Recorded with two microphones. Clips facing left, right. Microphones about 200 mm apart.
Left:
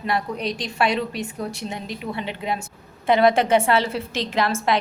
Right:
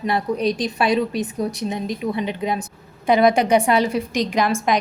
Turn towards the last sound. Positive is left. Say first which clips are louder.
# right 2 dB
turn(degrees=-15)  # may be behind; listen again after turning